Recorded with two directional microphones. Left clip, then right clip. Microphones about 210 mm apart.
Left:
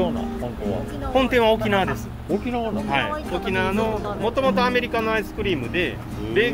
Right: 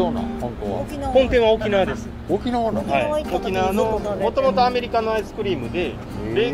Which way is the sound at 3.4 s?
35° left (ahead or behind).